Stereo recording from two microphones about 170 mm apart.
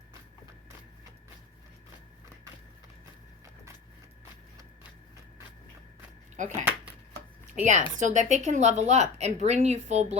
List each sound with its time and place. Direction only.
6.4 s a woman's voice: 45° right (ahead or behind)